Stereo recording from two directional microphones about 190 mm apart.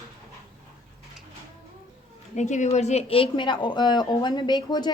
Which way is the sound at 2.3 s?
40° left (ahead or behind).